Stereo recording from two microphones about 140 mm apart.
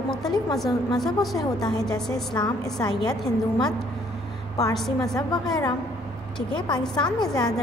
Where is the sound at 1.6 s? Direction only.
25° left (ahead or behind).